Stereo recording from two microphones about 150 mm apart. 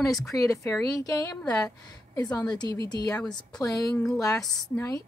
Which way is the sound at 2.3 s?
25° left (ahead or behind).